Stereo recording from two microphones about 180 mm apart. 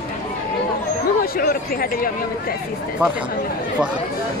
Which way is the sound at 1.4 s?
55° left (ahead or behind).